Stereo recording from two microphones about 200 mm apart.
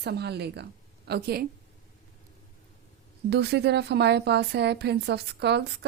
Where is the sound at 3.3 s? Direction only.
55° right (ahead or behind).